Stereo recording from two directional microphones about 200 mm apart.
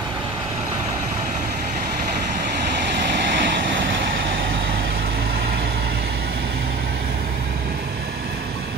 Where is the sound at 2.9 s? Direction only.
60° right (ahead or behind).